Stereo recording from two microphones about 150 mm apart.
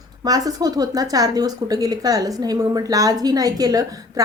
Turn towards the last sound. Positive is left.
turn(degrees=-25)  # may be behind; listen again after turning